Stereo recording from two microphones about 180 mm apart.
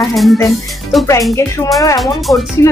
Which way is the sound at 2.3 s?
15° left (ahead or behind).